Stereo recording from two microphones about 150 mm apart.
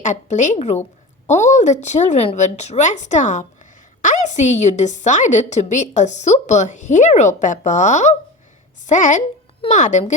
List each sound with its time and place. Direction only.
0.0 s a woman's voice: 55° left (ahead or behind)